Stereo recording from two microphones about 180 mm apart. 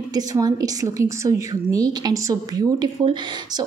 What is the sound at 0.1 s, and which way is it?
A woman's voice, 20° right (ahead or behind).